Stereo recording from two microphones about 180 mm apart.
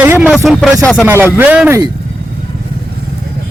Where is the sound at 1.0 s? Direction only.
10° right (ahead or behind).